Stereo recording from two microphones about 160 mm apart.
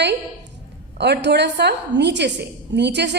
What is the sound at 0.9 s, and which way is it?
A woman's voice, 90° right.